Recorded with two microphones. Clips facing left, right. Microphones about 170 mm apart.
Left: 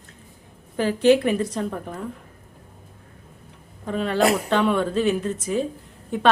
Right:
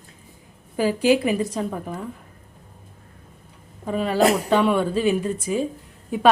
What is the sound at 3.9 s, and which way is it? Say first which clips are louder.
Speech: right 1 dB; 5° right (ahead or behind).